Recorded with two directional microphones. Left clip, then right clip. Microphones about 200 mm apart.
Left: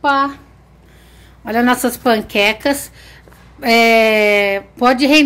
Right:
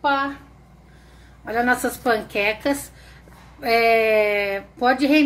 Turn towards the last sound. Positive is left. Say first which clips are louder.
# left 6 dB
turn(degrees=45)  # may be behind; listen again after turning